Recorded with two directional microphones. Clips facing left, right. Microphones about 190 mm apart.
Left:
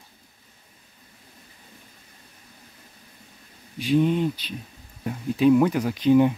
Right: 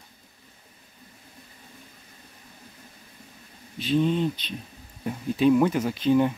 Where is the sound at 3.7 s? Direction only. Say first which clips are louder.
Left 2 dB; 15° left (ahead or behind).